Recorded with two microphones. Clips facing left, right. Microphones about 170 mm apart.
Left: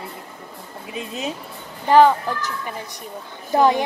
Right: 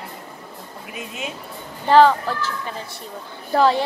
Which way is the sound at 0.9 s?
35° left (ahead or behind).